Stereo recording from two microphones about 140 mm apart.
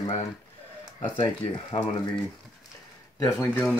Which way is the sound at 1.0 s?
35° left (ahead or behind).